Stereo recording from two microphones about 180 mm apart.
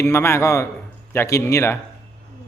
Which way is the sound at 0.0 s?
15° left (ahead or behind).